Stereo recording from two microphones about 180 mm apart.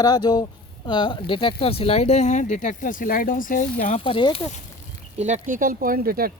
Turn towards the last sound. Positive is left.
turn(degrees=-55)  # may be behind; listen again after turning